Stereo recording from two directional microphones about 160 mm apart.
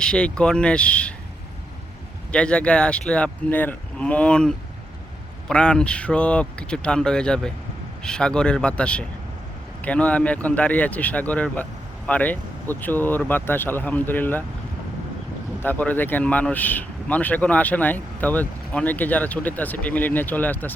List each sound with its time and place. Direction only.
0.0 s speech: 5° left (ahead or behind)
2.3 s speech: 5° left (ahead or behind)
15.6 s speech: 10° left (ahead or behind)